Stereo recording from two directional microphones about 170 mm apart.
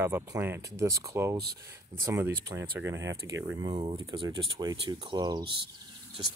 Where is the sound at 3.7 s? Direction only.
30° right (ahead or behind).